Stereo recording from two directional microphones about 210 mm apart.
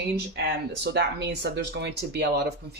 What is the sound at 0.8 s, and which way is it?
Speech, 55° right (ahead or behind).